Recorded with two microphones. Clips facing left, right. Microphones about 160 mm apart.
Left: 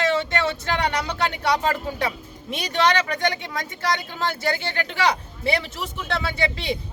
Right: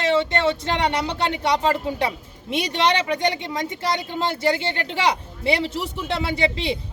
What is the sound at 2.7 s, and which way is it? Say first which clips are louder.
Speech: left 1 dB; 25° right (ahead or behind).